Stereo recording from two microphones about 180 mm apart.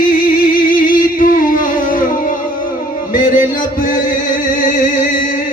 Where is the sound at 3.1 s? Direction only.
50° left (ahead or behind).